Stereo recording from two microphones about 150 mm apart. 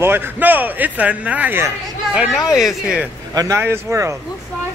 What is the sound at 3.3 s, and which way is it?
Speech, 25° right (ahead or behind).